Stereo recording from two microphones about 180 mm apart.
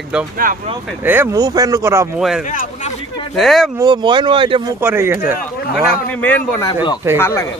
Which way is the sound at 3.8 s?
25° right (ahead or behind).